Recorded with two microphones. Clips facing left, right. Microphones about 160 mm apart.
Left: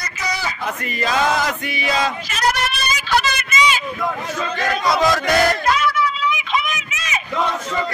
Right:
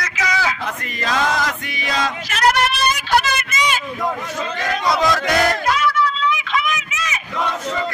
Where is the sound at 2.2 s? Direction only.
65° right (ahead or behind); by 3.8 s 50° right (ahead or behind).